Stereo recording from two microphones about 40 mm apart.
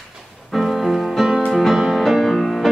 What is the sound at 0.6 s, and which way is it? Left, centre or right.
Music, centre.